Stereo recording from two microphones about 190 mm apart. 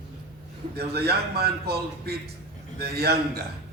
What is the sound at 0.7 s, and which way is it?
A man's voice, 60° right (ahead or behind).